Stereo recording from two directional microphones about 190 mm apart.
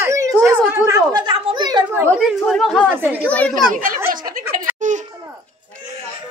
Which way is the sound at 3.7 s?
45° right (ahead or behind).